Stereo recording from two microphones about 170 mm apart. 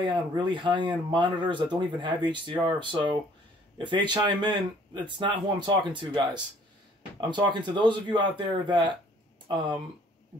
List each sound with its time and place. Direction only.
0.0 s speech: 30° right (ahead or behind)